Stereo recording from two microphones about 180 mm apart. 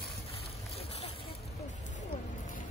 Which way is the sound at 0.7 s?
35° left (ahead or behind).